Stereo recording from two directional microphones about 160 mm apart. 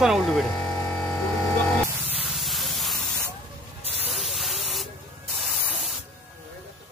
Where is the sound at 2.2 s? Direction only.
Centre (ahead or behind).